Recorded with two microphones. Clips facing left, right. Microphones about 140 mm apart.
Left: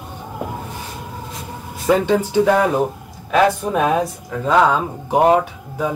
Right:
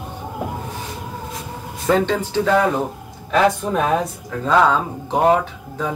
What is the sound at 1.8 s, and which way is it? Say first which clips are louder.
Speech: left 2 dB; 10° left (ahead or behind).